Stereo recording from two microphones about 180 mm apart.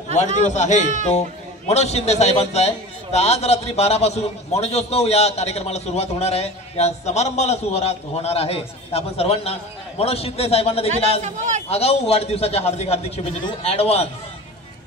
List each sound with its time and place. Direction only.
0.1 s a man's voice: 40° left (ahead or behind)
11.1 s a man's voice: 45° right (ahead or behind)
11.7 s a man's voice: 35° left (ahead or behind)